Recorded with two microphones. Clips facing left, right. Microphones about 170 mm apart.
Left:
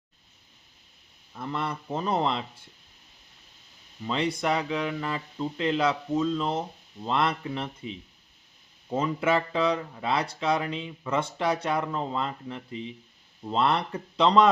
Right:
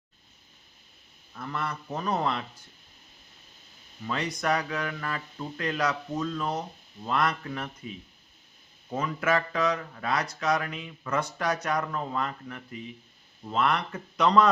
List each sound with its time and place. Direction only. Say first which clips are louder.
1.3 s speech: left 2 dB; 25° left (ahead or behind)
4.0 s speech: left 3 dB; 25° left (ahead or behind)